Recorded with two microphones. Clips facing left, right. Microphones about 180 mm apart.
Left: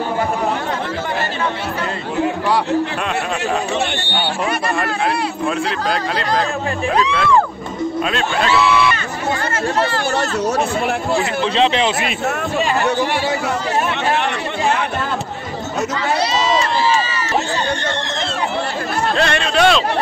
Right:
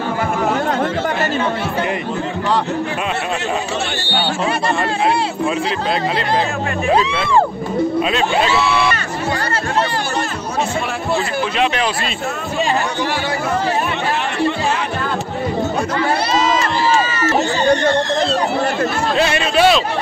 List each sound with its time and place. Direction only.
8.0 s speech: 5° right (ahead or behind)
11.5 s speech: 25° left (ahead or behind)
19.1 s speech: 5° right (ahead or behind)